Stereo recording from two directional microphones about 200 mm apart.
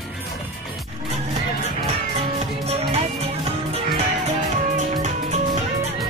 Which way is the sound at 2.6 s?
30° right (ahead or behind).